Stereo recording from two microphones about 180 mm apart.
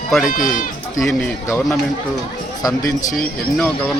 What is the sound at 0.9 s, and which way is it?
Speech, centre (ahead or behind).